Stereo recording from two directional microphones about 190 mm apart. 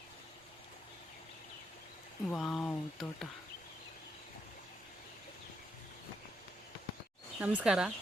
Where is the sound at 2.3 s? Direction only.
Centre (ahead or behind).